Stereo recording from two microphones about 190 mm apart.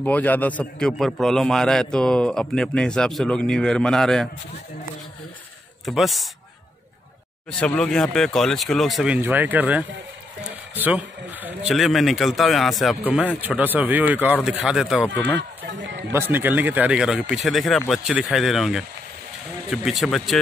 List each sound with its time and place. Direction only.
0.0 s a man's voice: 10° left (ahead or behind)
5.9 s a man's voice: centre (ahead or behind)
7.6 s a man's voice: 5° left (ahead or behind)
15.3 s run: 70° right (ahead or behind)
16.1 s a man's voice: 10° right (ahead or behind)